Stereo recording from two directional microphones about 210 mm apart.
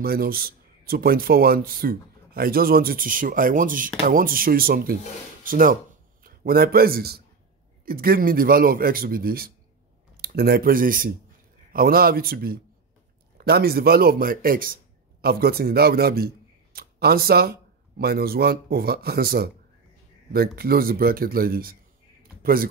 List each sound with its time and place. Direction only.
0.0 s a man's voice: 45° right (ahead or behind)